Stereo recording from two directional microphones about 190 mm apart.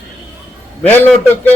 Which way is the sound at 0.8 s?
10° left (ahead or behind).